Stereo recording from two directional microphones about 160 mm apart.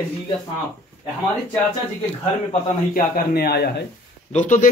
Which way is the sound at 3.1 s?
80° left.